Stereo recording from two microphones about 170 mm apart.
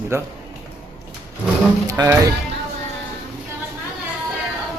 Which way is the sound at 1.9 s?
20° right (ahead or behind).